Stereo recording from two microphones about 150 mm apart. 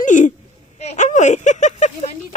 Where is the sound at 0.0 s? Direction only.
55° left (ahead or behind).